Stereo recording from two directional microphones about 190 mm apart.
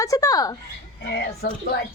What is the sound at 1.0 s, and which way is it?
Speech, 65° left (ahead or behind).